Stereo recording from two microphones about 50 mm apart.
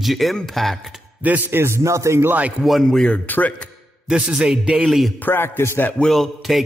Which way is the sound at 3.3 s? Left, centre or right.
Left.